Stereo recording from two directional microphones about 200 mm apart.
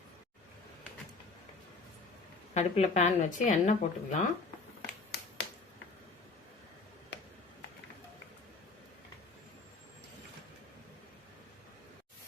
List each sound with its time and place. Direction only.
2.6 s speech: 35° left (ahead or behind)
5.1 s finger snapping: 60° left (ahead or behind)